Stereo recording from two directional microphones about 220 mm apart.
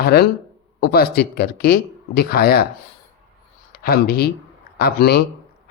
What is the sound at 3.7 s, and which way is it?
Speech, 45° left (ahead or behind).